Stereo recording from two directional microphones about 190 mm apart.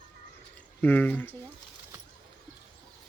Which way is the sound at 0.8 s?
10° left (ahead or behind).